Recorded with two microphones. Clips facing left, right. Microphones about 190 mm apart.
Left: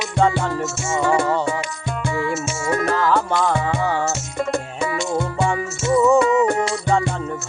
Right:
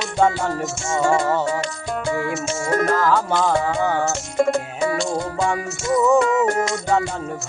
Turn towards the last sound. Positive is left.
turn(degrees=0)  # may be behind; listen again after turning